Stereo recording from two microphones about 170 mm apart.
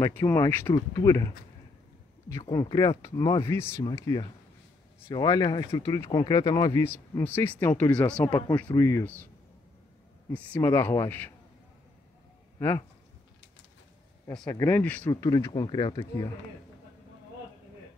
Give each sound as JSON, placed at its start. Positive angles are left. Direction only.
{"t": 0.0, "sound": "speech", "side_deg": 15}
{"t": 2.5, "sound": "speech", "side_deg": 20}
{"t": 10.3, "sound": "speech", "side_deg": 10}
{"t": 12.5, "sound": "speech", "side_deg": 15}
{"t": 14.5, "sound": "speech", "side_deg": 15}